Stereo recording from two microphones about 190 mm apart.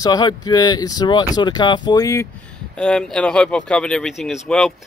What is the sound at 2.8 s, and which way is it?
Speech, 5° left (ahead or behind).